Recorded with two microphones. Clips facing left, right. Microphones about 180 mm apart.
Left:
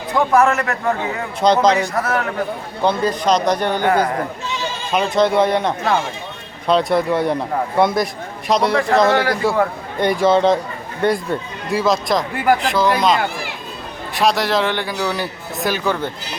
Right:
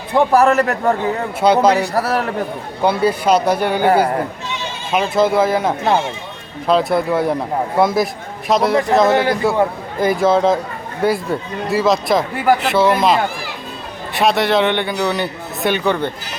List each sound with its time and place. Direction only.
0.1 s a man's voice: 35° right (ahead or behind)
1.4 s a man's voice: 5° right (ahead or behind)
1.8 s a man's voice: 35° right (ahead or behind)
2.8 s a man's voice: 10° right (ahead or behind)
4.9 s a man's voice: 5° right (ahead or behind)